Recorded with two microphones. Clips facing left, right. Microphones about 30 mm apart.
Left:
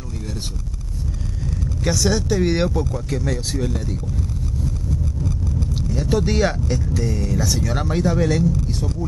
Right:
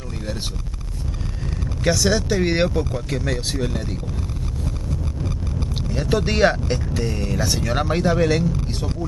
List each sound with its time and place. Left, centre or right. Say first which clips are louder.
1.8 s speech: right 1 dB; right
5.2 s speech: left 2 dB; right